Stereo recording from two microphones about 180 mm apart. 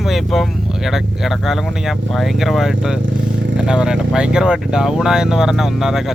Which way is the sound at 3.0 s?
90° right.